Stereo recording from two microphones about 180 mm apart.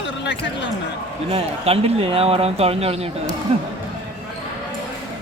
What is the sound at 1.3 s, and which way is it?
Speech, 35° right (ahead or behind).